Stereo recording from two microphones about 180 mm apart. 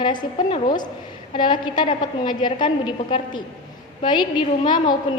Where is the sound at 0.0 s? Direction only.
25° left (ahead or behind).